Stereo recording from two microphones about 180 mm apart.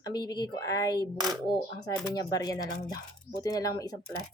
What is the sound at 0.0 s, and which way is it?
Speech, 25° left (ahead or behind).